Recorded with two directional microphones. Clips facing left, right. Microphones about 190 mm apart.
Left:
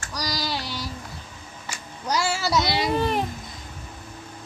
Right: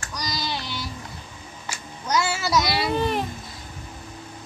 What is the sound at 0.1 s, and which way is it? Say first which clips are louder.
Child singing: left 1 dB; 35° left (ahead or behind).